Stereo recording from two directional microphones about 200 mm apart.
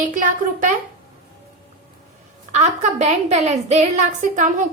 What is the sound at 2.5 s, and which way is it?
A woman's voice, 35° right (ahead or behind).